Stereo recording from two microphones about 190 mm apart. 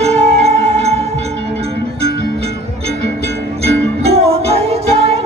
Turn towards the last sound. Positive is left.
turn(degrees=-35)  # may be behind; listen again after turning